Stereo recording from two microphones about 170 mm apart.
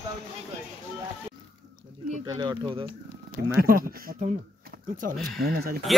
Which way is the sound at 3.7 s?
60° right (ahead or behind).